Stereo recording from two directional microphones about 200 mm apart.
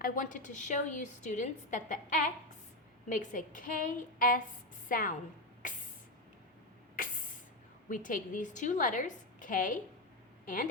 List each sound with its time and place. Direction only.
0.0 s a woman's voice: 40° left (ahead or behind)
6.9 s spray: 45° left (ahead or behind)
7.9 s a woman's voice: 40° left (ahead or behind)